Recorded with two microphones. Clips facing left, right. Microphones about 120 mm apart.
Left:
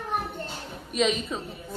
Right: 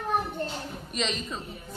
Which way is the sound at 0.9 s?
5° left (ahead or behind).